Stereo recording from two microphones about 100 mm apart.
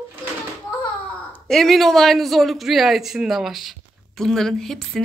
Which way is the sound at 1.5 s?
Centre (ahead or behind).